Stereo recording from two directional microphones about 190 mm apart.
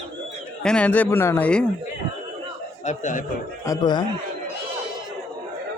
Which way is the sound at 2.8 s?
40° left (ahead or behind).